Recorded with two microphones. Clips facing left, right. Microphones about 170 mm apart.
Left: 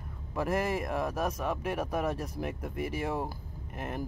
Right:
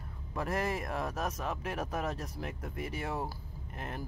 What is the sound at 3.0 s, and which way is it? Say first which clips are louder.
Speech: left 3 dB; 15° left (ahead or behind).